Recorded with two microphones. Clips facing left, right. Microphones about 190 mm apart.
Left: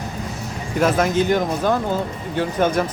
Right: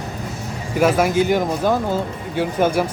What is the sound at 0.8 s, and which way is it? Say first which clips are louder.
Speech: right 2 dB; 10° right (ahead or behind).